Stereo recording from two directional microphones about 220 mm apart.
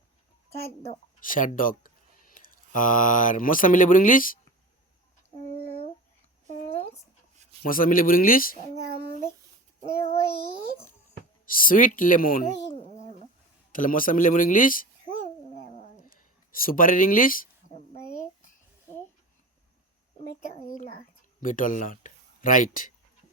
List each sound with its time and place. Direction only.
0.9 s speech: 40° left (ahead or behind)
5.5 s a sound: 30° left (ahead or behind)
7.6 s speech: 40° left (ahead or behind)
10.0 s child singing: 25° left (ahead or behind)
11.5 s speech: 40° left (ahead or behind)
15.5 s cat: 35° left (ahead or behind)
16.1 s a sound: 40° left (ahead or behind)
20.5 s a sound: 35° left (ahead or behind)
21.4 s speech: 35° left (ahead or behind)